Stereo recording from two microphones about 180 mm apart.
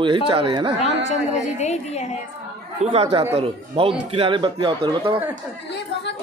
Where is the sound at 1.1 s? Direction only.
40° left (ahead or behind).